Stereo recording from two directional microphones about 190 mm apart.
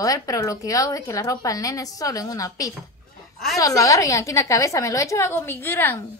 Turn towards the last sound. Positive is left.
turn(degrees=10)  # may be behind; listen again after turning